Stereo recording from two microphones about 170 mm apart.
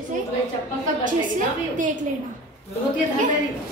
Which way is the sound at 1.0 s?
50° right (ahead or behind).